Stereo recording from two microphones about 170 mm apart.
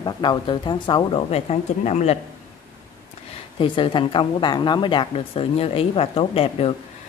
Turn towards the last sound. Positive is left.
turn(degrees=35)  # may be behind; listen again after turning